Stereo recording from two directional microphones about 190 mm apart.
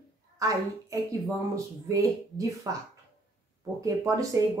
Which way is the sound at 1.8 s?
15° right (ahead or behind).